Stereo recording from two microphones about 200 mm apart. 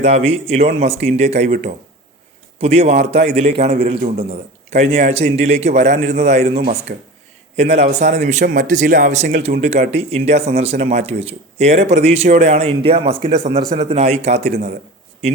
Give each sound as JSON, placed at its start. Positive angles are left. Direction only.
{"t": 0.0, "sound": "speech", "side_deg": -30}
{"t": 2.6, "sound": "speech", "side_deg": -30}
{"t": 6.9, "sound": "speech", "side_deg": -50}
{"t": 7.5, "sound": "speech", "side_deg": -30}